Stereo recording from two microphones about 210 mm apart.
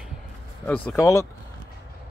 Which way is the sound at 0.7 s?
5° left (ahead or behind).